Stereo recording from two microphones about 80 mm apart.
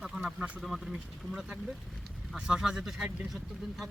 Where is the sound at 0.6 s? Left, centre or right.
Centre.